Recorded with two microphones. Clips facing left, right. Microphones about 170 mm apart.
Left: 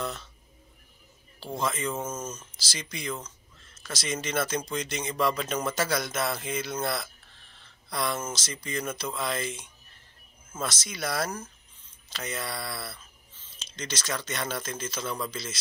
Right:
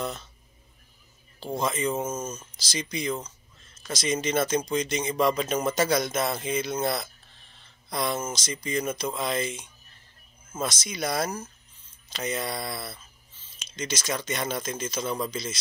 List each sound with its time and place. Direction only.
1.4 s speech: 15° right (ahead or behind)